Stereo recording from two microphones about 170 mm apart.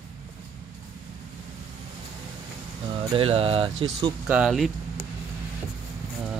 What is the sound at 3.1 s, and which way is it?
Speech, 35° right (ahead or behind).